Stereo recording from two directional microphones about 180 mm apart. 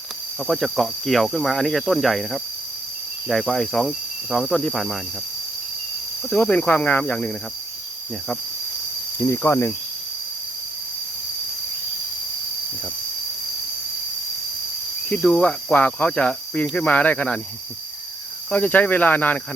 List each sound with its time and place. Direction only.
0.4 s speech: centre (ahead or behind)
6.3 s speech: 5° left (ahead or behind)
9.2 s speech: 15° left (ahead or behind)
15.1 s speech: 5° left (ahead or behind)
18.5 s speech: 10° left (ahead or behind)